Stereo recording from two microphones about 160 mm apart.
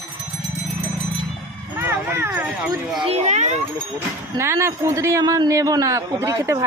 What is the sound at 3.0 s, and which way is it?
Speech, 40° right (ahead or behind).